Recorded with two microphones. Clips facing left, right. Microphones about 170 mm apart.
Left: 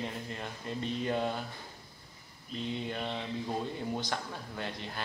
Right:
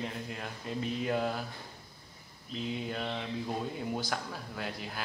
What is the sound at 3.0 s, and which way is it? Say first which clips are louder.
Mantra: even; 5° left (ahead or behind).